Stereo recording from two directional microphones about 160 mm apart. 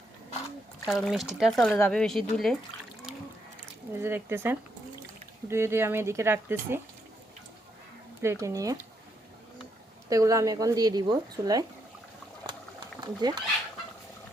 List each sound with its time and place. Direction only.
0.9 s a woman's voice: centre (ahead or behind)
3.9 s speech: 15° right (ahead or behind)
8.2 s a woman's voice: 20° right (ahead or behind)
10.1 s a woman's voice: 20° right (ahead or behind)
13.0 s speech: 25° right (ahead or behind)